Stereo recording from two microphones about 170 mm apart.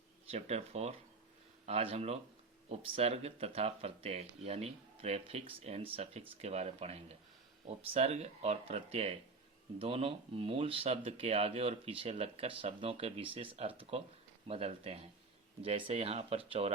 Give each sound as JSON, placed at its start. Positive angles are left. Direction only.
{"t": 0.3, "sound": "speech", "side_deg": -40}